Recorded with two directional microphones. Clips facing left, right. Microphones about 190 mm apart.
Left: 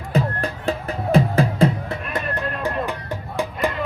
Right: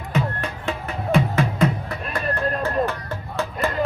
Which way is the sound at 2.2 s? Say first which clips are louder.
Right 3 dB; 35° right (ahead or behind).